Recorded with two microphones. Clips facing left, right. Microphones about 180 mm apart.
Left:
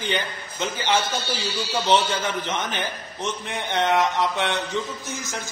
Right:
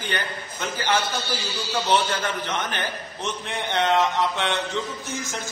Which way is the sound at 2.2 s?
15° left (ahead or behind).